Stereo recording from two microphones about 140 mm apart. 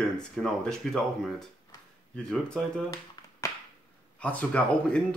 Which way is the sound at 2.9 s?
20° left (ahead or behind).